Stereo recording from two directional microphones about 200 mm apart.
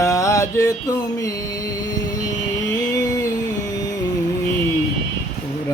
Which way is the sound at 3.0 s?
20° left (ahead or behind).